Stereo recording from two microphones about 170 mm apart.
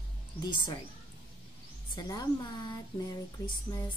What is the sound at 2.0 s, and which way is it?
Speech, 25° left (ahead or behind).